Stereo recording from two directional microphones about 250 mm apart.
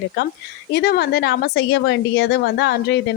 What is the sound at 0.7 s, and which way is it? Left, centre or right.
A woman's voice, left.